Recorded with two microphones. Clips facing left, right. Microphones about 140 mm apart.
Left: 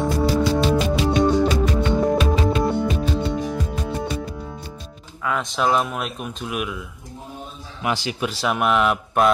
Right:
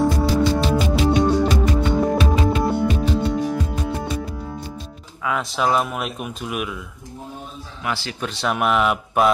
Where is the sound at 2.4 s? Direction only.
5° right (ahead or behind).